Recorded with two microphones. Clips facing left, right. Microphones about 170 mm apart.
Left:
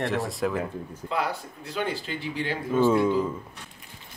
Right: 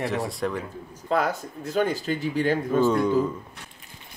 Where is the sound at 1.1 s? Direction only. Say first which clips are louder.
Right 5 dB; 45° right (ahead or behind).